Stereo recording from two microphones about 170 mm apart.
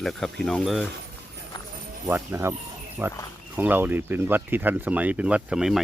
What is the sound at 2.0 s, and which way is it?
Speech, 15° right (ahead or behind).